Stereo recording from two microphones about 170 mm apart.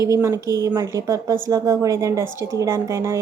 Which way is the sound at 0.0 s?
15° right (ahead or behind).